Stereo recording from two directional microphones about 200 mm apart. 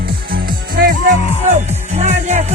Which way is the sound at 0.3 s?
45° right (ahead or behind).